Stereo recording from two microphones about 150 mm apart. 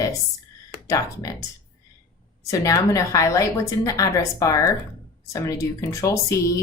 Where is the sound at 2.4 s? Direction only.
20° left (ahead or behind).